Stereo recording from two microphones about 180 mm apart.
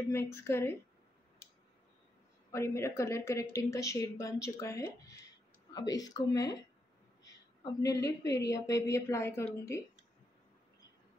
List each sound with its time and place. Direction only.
0.1 s speech: 15° left (ahead or behind)
2.5 s speech: 15° left (ahead or behind)